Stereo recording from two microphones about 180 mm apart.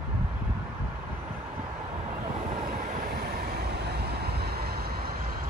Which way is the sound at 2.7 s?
50° right (ahead or behind).